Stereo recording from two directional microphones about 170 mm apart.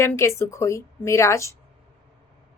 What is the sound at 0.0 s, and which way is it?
A woman's voice, 15° left (ahead or behind).